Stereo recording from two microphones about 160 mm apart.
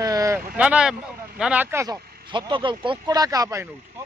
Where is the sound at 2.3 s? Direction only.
30° right (ahead or behind).